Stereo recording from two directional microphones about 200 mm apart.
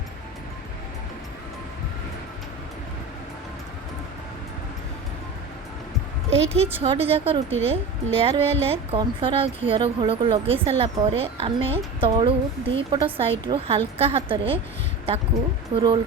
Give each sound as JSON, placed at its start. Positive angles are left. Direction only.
{"t": 6.3, "sound": "a woman's voice", "side_deg": -30}
{"t": 15.7, "sound": "a woman's voice", "side_deg": -25}